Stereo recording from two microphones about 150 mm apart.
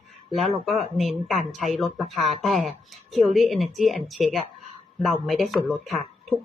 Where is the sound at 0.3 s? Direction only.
Centre (ahead or behind).